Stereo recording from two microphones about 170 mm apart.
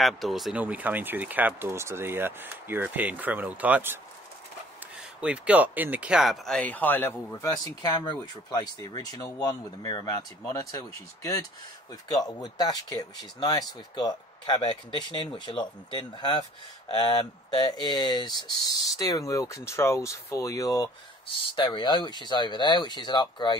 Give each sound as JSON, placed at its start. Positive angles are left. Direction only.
{"t": 0.0, "sound": "speech", "side_deg": 0}
{"t": 5.2, "sound": "speech", "side_deg": -5}
{"t": 17.6, "sound": "speech", "side_deg": 25}